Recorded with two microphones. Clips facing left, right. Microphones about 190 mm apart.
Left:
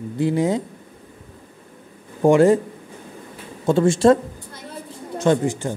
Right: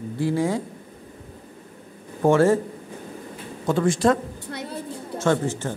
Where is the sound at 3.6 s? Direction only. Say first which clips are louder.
Left 5 dB; 25° left (ahead or behind).